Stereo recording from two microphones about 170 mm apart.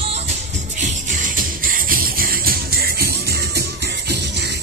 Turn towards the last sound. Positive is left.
turn(degrees=-60)  # may be behind; listen again after turning